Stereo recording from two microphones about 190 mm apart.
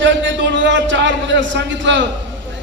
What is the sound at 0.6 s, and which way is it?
A man's voice, 75° right (ahead or behind).